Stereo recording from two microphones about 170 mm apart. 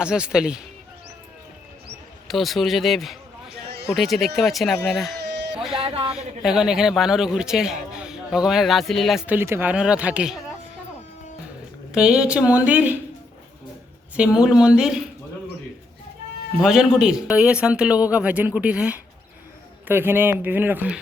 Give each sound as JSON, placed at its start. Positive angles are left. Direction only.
{"t": 0.0, "sound": "a man's voice", "side_deg": -5}
{"t": 2.2, "sound": "a man's voice", "side_deg": 0}
{"t": 5.2, "sound": "a sound", "side_deg": -80}
{"t": 5.7, "sound": "speech", "side_deg": -35}
{"t": 6.1, "sound": "a man's voice", "side_deg": -5}
{"t": 11.9, "sound": "a man's voice", "side_deg": -5}
{"t": 14.2, "sound": "a man's voice", "side_deg": -5}
{"t": 16.6, "sound": "a man's voice", "side_deg": -5}